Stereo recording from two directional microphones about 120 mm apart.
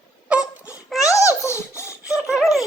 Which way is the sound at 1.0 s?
25° left (ahead or behind).